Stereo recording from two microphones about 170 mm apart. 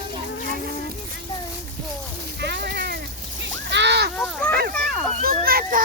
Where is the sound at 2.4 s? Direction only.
75° right (ahead or behind).